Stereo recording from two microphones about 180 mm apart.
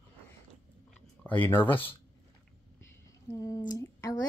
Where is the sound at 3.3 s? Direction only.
20° left (ahead or behind).